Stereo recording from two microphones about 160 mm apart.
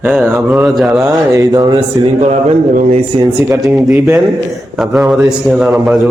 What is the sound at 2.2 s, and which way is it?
A man's voice, 45° right (ahead or behind).